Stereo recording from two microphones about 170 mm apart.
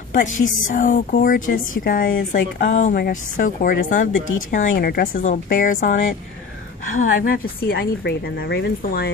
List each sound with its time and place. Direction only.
0.1 s speech: 50° left (ahead or behind)
7.0 s a woman's voice: 55° left (ahead or behind); by 9.1 s 70° left (ahead or behind)